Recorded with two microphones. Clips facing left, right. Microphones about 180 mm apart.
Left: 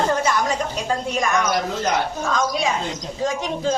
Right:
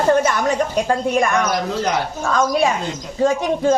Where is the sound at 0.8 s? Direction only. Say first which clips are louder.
Right 3 dB; 55° right (ahead or behind).